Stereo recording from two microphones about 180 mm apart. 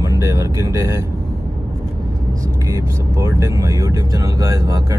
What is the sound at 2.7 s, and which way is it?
Speech, 15° right (ahead or behind).